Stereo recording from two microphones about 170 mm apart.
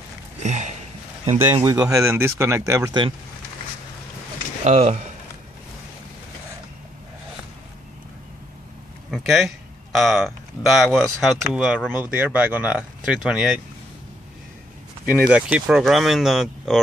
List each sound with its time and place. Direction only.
0.4 s a sound: 45° right (ahead or behind)
1.4 s speech: 15° right (ahead or behind)
4.6 s speech: 40° right (ahead or behind)
9.1 s speech: centre (ahead or behind)
15.1 s speech: 5° right (ahead or behind)